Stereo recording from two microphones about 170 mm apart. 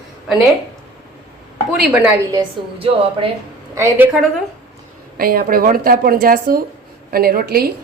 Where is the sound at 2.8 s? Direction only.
30° right (ahead or behind).